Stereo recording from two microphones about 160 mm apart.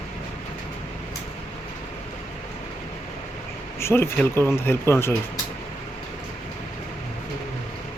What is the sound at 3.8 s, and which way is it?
Speech, 15° left (ahead or behind).